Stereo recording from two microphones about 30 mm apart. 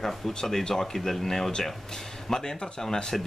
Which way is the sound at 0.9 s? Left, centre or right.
Centre.